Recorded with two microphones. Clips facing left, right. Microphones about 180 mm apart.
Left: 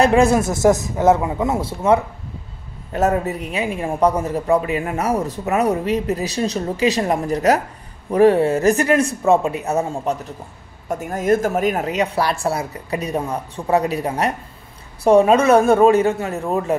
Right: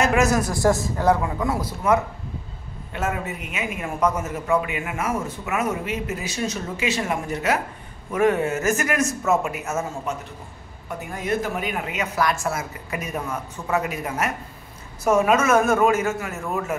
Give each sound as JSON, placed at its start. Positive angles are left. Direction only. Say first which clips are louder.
{"t": 0.0, "sound": "a man's voice", "louder": "left 6 dB", "side_deg": 30}
{"t": 2.9, "sound": "speech", "louder": "left 8 dB", "side_deg": 40}
{"t": 10.9, "sound": "speech", "louder": "left 8 dB", "side_deg": 45}